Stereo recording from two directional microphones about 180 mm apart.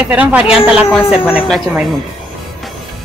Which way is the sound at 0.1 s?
10° right (ahead or behind).